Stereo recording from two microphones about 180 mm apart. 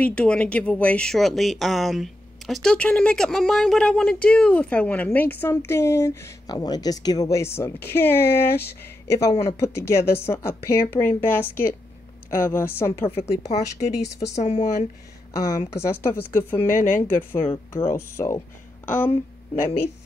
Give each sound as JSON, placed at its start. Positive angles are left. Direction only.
{"t": 0.0, "sound": "speech", "side_deg": 5}
{"t": 13.5, "sound": "speech", "side_deg": 40}
{"t": 15.3, "sound": "speech", "side_deg": 15}